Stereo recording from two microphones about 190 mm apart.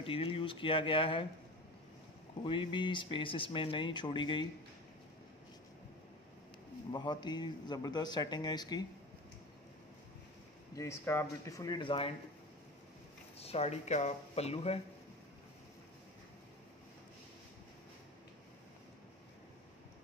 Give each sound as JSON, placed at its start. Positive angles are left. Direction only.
{"t": 0.0, "sound": "speech", "side_deg": 30}
{"t": 2.4, "sound": "speech", "side_deg": 25}
{"t": 6.9, "sound": "speech", "side_deg": 25}
{"t": 10.8, "sound": "speech", "side_deg": 15}
{"t": 13.4, "sound": "speech", "side_deg": 30}